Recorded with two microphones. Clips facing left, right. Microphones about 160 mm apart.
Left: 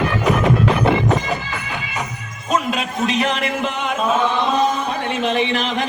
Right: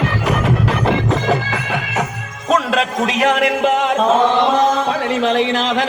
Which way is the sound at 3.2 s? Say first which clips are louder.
Right 6 dB; 80° right.